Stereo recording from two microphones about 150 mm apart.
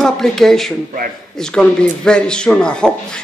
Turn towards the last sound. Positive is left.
turn(degrees=5)  # may be behind; listen again after turning